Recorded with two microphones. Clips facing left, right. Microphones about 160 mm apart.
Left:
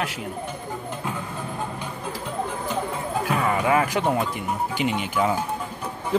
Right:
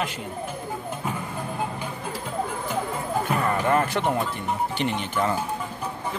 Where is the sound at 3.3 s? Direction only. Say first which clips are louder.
Left 2 dB; 5° left (ahead or behind).